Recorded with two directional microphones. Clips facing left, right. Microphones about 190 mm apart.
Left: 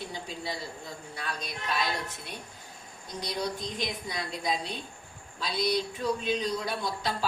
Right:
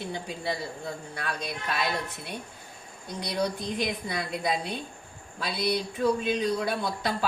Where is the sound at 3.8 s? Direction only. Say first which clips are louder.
Right 4 dB; 60° right (ahead or behind).